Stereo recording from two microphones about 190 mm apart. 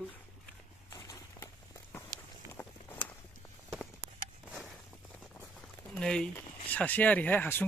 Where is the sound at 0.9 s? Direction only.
20° left (ahead or behind).